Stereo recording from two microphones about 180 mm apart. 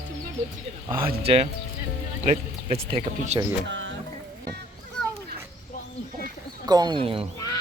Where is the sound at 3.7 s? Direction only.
90° right.